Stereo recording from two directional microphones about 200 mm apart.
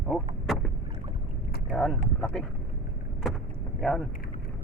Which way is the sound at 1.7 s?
Centre (ahead or behind).